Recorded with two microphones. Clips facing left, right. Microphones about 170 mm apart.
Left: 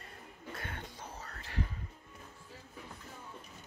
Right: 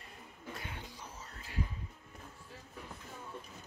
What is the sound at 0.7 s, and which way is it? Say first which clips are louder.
Music: left 2 dB; 60° left (ahead or behind).